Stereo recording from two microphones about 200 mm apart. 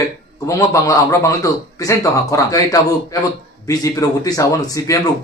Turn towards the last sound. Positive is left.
turn(degrees=15)  # may be behind; listen again after turning